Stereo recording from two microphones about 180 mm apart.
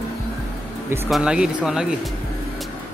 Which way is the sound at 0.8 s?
15° right (ahead or behind).